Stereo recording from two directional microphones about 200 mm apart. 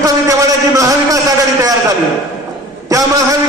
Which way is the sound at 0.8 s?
15° right (ahead or behind).